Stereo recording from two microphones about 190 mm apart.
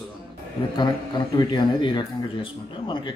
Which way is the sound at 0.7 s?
20° left (ahead or behind).